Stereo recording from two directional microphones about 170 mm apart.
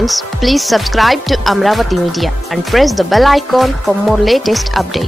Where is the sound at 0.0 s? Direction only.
Centre (ahead or behind).